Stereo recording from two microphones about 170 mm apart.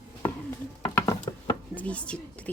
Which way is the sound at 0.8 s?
20° left (ahead or behind).